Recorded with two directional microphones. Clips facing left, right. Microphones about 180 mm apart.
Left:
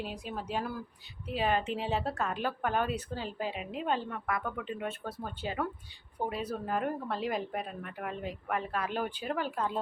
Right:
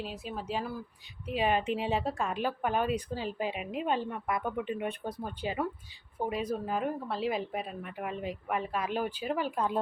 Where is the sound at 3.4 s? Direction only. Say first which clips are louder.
Right 1 dB; 35° left (ahead or behind).